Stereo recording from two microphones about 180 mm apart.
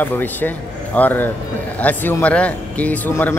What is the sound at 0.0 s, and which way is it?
Speech, 10° left (ahead or behind).